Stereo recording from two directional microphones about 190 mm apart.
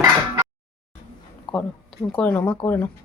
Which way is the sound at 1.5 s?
5° left (ahead or behind).